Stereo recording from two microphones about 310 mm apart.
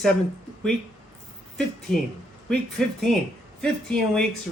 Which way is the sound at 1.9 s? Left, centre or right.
Centre.